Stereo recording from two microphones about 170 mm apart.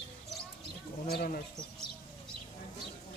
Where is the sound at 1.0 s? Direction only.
65° left (ahead or behind).